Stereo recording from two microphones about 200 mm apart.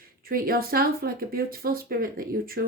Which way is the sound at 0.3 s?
45° right (ahead or behind).